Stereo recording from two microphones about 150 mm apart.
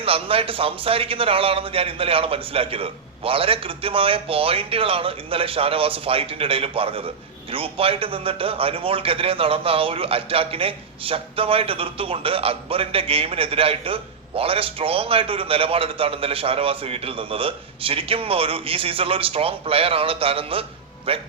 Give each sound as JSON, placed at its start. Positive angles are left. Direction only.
{"t": 0.0, "sound": "a man's voice", "side_deg": -40}